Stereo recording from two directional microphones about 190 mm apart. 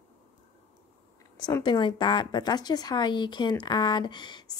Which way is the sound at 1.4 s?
20° left (ahead or behind).